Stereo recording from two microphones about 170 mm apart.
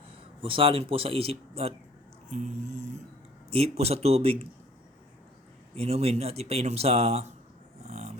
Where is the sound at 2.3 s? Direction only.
45° right (ahead or behind).